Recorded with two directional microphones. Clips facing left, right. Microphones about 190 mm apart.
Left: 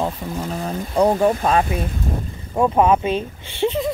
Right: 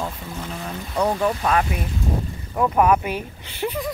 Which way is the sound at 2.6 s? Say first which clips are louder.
Left 2 dB; 25° left (ahead or behind).